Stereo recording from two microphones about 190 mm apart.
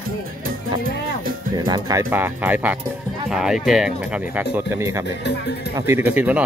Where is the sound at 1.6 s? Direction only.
20° right (ahead or behind).